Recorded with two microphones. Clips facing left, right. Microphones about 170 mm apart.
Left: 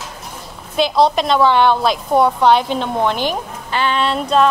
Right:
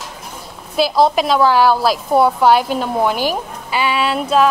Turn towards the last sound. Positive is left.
turn(degrees=-5)  # may be behind; listen again after turning